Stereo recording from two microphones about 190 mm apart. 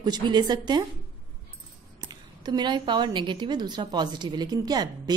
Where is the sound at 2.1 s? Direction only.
20° right (ahead or behind).